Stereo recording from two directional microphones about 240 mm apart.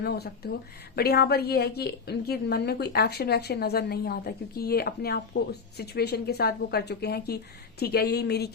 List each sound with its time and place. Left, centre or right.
0.0 s a woman's voice: left